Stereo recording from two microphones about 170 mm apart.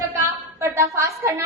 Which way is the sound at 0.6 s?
15° right (ahead or behind).